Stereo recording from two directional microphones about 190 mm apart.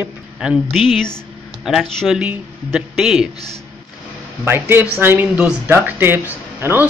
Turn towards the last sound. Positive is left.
turn(degrees=-10)  # may be behind; listen again after turning